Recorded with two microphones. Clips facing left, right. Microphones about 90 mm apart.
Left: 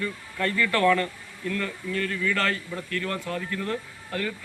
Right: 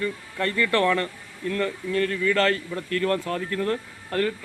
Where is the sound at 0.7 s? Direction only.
30° right (ahead or behind).